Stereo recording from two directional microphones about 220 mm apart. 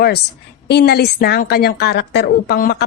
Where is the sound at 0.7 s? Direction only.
45° left (ahead or behind).